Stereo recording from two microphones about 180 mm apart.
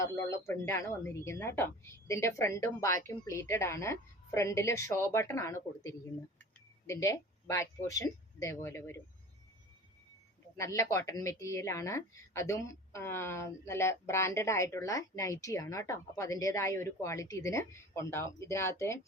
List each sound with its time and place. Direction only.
0.0 s a woman's voice: 15° left (ahead or behind)
10.6 s a woman's voice: 15° left (ahead or behind)